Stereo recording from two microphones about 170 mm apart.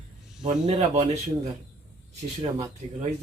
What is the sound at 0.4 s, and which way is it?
Speech, 40° right (ahead or behind).